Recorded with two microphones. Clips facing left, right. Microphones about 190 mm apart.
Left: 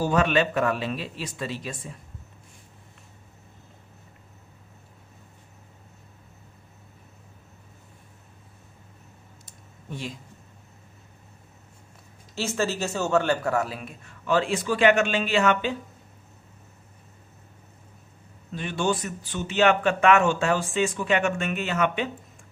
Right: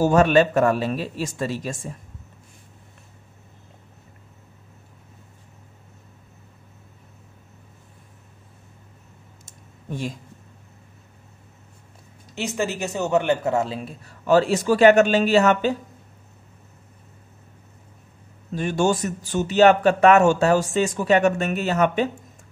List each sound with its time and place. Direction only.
0.0 s speech: 45° right (ahead or behind)
9.5 s a sound: 45° right (ahead or behind)
12.4 s speech: 15° right (ahead or behind); by 15.8 s 40° right (ahead or behind)
18.5 s speech: 45° right (ahead or behind)